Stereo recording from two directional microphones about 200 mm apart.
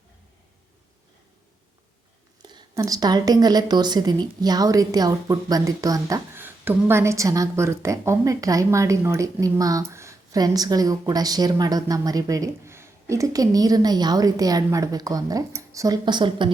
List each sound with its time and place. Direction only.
2.4 s a woman's voice: 20° right (ahead or behind)